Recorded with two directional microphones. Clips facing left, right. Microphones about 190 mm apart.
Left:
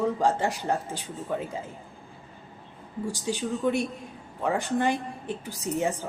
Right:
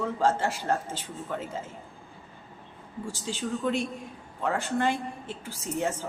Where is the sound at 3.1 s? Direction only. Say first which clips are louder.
Left 2 dB; 15° left (ahead or behind).